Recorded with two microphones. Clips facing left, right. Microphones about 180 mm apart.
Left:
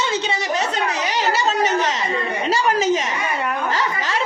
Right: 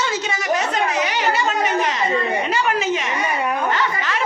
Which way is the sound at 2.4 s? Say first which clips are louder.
Left 2 dB; 30° left (ahead or behind).